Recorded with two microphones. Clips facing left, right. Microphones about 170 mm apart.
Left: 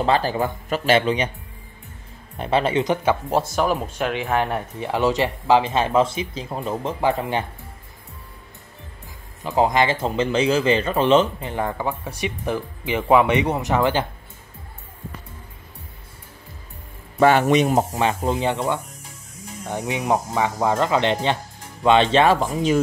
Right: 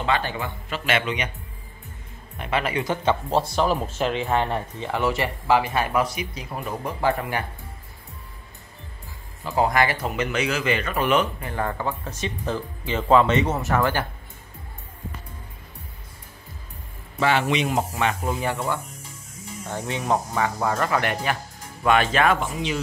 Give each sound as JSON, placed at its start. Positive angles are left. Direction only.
{"t": 0.0, "sound": "speech", "side_deg": 35}
{"t": 2.3, "sound": "speech", "side_deg": 30}
{"t": 9.4, "sound": "speech", "side_deg": 20}
{"t": 17.2, "sound": "speech", "side_deg": 45}